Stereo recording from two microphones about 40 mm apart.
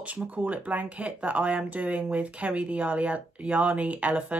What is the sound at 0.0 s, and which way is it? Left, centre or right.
Speech, right.